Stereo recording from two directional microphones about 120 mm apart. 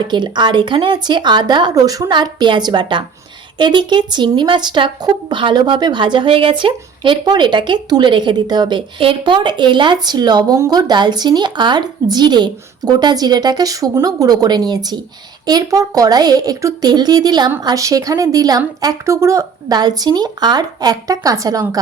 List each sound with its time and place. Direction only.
0.1 s a woman's voice: 40° right (ahead or behind)